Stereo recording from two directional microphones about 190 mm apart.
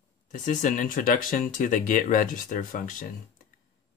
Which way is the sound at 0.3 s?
40° left (ahead or behind).